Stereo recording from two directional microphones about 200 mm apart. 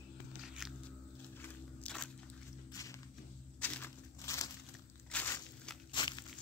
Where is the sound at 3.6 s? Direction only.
10° left (ahead or behind).